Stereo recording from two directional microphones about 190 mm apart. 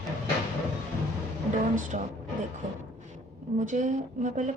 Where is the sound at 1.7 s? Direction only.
45° right (ahead or behind).